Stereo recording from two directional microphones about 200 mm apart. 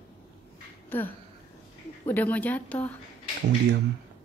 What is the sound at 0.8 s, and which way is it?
A woman's voice, 10° left (ahead or behind).